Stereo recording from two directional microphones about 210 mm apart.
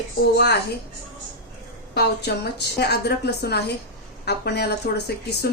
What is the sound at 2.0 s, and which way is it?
A woman's voice, 50° left (ahead or behind).